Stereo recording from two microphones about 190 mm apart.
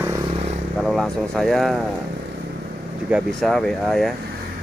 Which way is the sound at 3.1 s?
Centre (ahead or behind).